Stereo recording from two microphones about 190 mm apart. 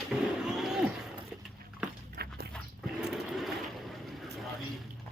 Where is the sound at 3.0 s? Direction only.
5° right (ahead or behind).